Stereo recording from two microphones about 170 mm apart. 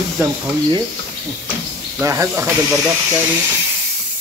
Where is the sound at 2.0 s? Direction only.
15° right (ahead or behind).